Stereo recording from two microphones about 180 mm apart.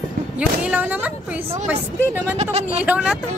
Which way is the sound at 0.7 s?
10° right (ahead or behind).